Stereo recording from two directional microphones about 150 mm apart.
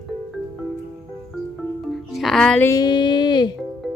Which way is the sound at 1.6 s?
Centre (ahead or behind).